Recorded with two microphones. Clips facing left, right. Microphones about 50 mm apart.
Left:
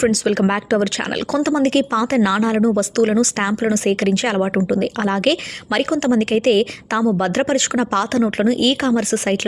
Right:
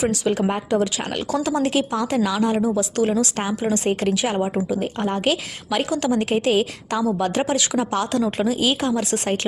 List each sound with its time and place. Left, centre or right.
0.0 s speech: left